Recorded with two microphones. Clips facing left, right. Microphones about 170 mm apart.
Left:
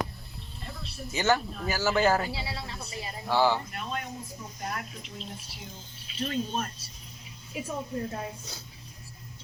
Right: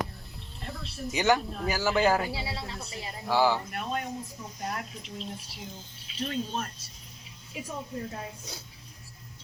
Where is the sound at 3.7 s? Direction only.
45° right (ahead or behind).